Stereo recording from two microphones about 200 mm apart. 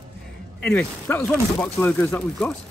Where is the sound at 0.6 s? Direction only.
10° left (ahead or behind).